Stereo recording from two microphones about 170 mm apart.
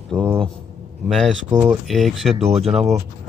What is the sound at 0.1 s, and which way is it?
A man's voice, 5° left (ahead or behind).